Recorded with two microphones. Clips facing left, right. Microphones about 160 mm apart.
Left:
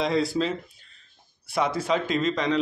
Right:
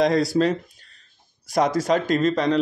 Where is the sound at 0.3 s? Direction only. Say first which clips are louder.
Right 6 dB; 50° right (ahead or behind).